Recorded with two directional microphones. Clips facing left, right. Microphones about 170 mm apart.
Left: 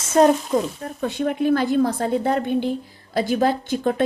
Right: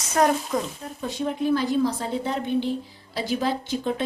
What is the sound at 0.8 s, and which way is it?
A woman's voice, 60° left (ahead or behind).